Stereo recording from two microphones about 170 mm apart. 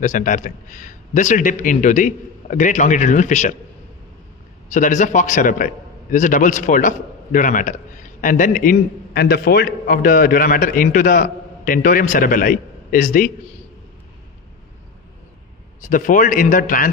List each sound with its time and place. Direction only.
0.0 s a man's voice: 50° left (ahead or behind)
4.6 s a man's voice: 45° left (ahead or behind)
15.9 s a man's voice: 50° left (ahead or behind)